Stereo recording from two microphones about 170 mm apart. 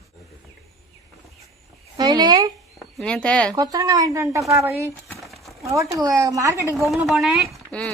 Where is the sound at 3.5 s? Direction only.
20° right (ahead or behind).